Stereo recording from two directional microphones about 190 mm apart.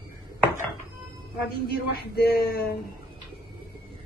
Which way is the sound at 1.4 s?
55° left (ahead or behind).